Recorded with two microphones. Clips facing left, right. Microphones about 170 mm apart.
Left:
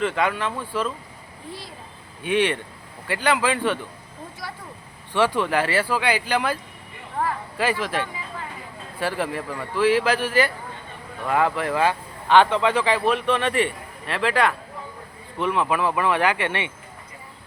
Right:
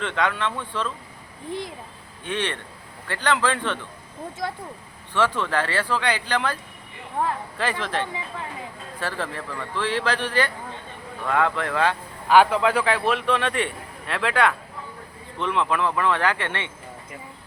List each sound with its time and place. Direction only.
0.0 s a man's voice: 5° left (ahead or behind)
1.5 s speech: 20° right (ahead or behind)
2.2 s a man's voice: 10° left (ahead or behind)
5.1 s a man's voice: 15° left (ahead or behind)
7.6 s a man's voice: 5° left (ahead or behind)
12.3 s a man's voice: 5° right (ahead or behind); by 16.7 s 15° left (ahead or behind)